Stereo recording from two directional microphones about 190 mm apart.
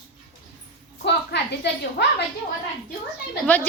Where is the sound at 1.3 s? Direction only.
65° left (ahead or behind).